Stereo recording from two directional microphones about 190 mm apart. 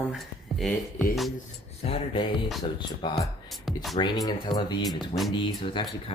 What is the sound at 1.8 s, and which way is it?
Speech, 30° left (ahead or behind).